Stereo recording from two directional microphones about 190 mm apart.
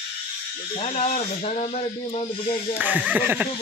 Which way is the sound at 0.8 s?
35° left (ahead or behind).